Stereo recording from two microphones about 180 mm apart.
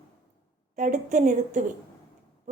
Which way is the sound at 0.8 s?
45° right (ahead or behind).